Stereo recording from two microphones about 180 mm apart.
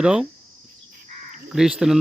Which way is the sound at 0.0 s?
5° right (ahead or behind).